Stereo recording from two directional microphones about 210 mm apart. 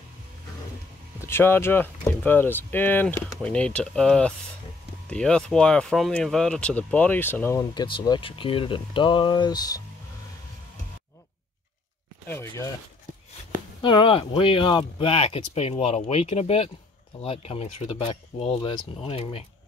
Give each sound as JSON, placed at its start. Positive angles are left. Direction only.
{"t": 1.2, "sound": "speech", "side_deg": 10}
{"t": 7.7, "sound": "speech", "side_deg": 20}
{"t": 12.3, "sound": "a sound", "side_deg": 10}
{"t": 13.7, "sound": "speech", "side_deg": 25}